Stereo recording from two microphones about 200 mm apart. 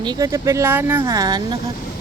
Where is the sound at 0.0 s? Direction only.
20° right (ahead or behind).